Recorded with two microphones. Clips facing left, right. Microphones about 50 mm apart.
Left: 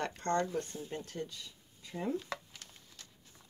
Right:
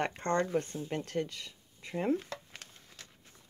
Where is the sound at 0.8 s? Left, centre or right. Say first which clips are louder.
Right 6 dB; right.